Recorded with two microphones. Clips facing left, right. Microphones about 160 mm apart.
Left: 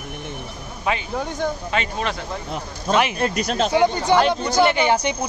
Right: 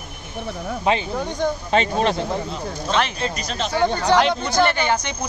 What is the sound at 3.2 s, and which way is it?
Speech, 50° left (ahead or behind).